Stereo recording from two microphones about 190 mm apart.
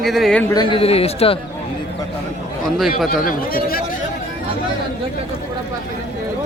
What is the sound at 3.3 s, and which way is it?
Speech, 50° left (ahead or behind).